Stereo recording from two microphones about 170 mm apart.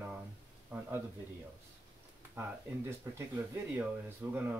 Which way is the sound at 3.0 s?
20° right (ahead or behind).